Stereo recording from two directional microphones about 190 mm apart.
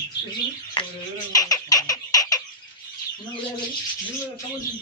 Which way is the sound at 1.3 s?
20° left (ahead or behind).